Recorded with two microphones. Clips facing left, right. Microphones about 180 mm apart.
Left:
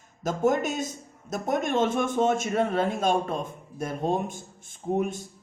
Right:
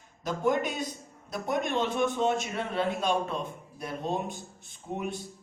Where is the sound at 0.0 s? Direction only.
45° left (ahead or behind).